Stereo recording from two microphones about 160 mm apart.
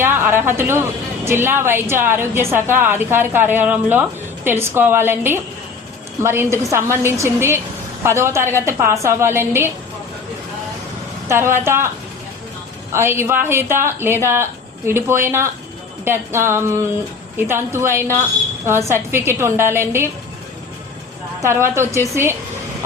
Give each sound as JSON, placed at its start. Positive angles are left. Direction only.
{"t": 0.0, "sound": "a sound", "side_deg": -15}
{"t": 1.2, "sound": "a woman's voice", "side_deg": -15}
{"t": 11.3, "sound": "a woman's voice", "side_deg": -15}
{"t": 12.9, "sound": "a woman's voice", "side_deg": -15}
{"t": 21.4, "sound": "a woman's voice", "side_deg": -15}